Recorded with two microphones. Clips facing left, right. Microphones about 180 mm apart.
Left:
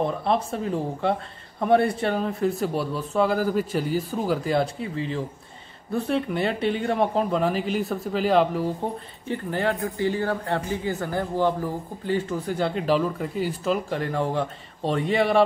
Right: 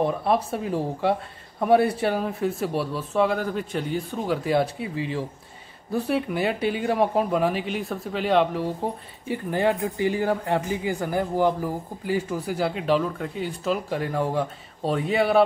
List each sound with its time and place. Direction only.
0.0 s speech: 5° right (ahead or behind)
9.3 s speech: 15° right (ahead or behind)